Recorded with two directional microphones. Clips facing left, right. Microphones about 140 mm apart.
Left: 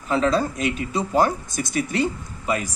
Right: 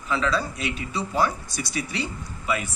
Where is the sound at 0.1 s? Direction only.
45° left (ahead or behind).